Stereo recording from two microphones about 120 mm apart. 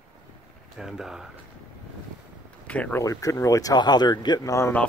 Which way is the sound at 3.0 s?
25° left (ahead or behind).